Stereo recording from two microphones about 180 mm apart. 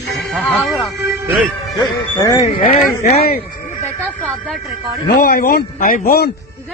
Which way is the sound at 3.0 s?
55° left (ahead or behind).